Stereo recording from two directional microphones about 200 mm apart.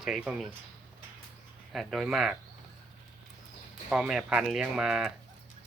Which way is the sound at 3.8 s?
5° right (ahead or behind).